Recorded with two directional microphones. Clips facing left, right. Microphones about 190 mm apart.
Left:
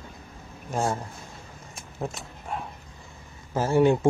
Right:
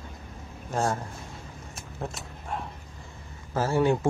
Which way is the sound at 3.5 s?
20° left (ahead or behind).